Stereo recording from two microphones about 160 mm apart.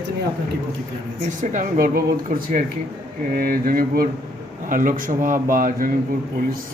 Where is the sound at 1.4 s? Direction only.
55° right (ahead or behind).